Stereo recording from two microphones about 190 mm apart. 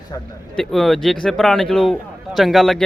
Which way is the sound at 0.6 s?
Centre (ahead or behind).